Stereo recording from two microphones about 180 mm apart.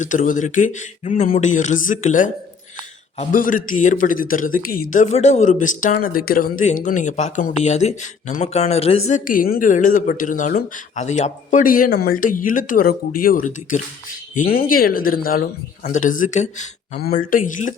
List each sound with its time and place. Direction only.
0.0 s speech: 45° left (ahead or behind)
3.3 s speech: 50° left (ahead or behind)
17.0 s speech: 55° left (ahead or behind)